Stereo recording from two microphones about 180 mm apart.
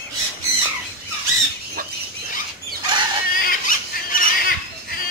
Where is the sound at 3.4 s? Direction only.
50° left (ahead or behind).